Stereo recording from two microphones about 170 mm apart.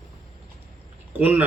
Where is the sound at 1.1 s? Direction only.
10° right (ahead or behind).